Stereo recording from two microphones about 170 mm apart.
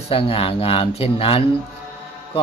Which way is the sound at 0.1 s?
35° left (ahead or behind).